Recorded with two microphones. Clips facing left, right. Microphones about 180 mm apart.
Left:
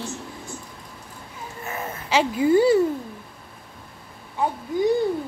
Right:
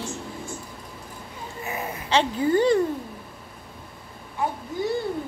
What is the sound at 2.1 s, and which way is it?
Speech, 10° left (ahead or behind).